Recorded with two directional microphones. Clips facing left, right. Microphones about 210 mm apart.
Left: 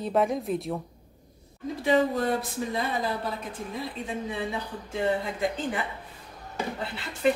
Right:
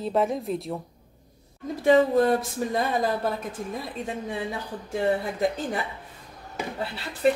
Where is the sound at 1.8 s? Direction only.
45° right (ahead or behind).